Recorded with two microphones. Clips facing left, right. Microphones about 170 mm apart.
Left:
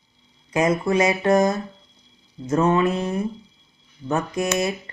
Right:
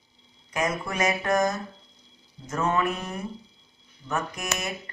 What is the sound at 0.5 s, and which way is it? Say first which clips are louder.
Speech: left 8 dB; 30° left (ahead or behind).